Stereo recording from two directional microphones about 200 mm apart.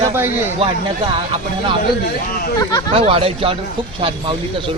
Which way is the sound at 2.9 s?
30° right (ahead or behind).